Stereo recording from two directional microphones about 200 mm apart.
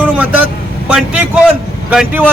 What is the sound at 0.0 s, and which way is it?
Vehicle, 10° right (ahead or behind).